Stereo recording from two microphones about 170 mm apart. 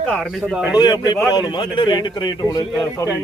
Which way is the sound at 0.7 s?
25° left (ahead or behind).